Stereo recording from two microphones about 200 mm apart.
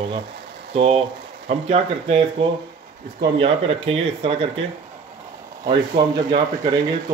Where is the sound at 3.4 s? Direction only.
30° right (ahead or behind).